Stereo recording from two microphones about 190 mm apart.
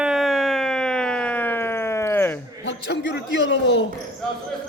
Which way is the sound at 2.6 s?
65° left (ahead or behind).